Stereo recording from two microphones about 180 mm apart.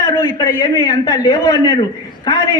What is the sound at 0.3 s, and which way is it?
A man's voice, 25° left (ahead or behind).